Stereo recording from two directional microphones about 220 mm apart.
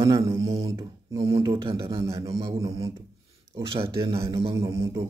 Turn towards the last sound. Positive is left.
turn(degrees=-15)  # may be behind; listen again after turning